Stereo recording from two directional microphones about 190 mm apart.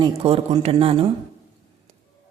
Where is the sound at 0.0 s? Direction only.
30° right (ahead or behind).